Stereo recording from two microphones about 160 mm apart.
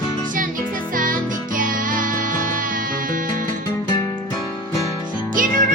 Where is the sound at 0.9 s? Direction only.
60° right (ahead or behind).